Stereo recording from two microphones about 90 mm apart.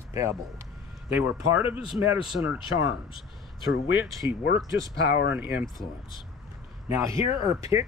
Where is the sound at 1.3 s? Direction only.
20° right (ahead or behind).